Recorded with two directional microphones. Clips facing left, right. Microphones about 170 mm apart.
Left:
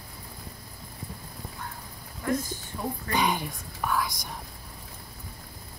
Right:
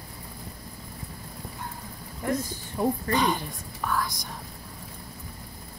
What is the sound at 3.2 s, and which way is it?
Speech, 10° left (ahead or behind).